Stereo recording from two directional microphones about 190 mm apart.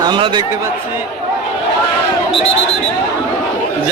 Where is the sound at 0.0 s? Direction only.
25° right (ahead or behind).